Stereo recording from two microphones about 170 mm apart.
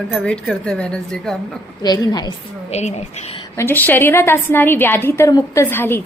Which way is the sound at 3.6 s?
10° left (ahead or behind).